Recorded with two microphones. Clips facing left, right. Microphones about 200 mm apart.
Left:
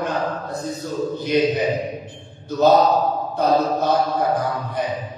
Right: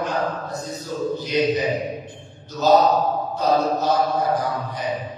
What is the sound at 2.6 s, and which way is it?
Speech, 55° left (ahead or behind).